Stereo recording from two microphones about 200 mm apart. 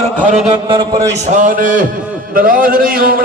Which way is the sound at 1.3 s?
40° right (ahead or behind).